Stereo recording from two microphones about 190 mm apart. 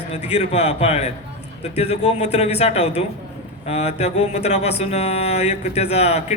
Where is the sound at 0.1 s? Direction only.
35° left (ahead or behind).